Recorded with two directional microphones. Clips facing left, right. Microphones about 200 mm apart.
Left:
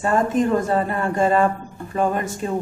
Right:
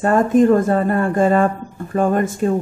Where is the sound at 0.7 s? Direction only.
50° right (ahead or behind).